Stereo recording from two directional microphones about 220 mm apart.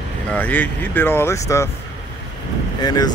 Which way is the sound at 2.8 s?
20° left (ahead or behind).